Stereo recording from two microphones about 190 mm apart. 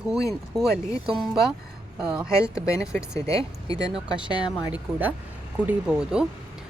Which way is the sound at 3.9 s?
5° right (ahead or behind).